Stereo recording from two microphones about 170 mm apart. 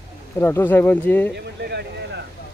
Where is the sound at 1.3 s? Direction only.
75° right (ahead or behind).